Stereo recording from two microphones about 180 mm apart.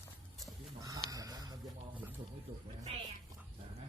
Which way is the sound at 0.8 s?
20° right (ahead or behind).